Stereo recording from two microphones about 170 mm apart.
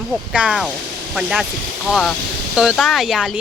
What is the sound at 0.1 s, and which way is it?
Speech, 5° right (ahead or behind).